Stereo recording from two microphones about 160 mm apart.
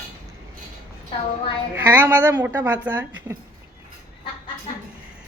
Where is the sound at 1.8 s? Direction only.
10° right (ahead or behind).